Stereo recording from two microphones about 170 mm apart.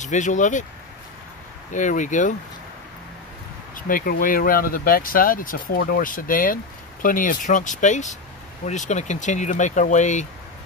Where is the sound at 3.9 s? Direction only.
55° left (ahead or behind).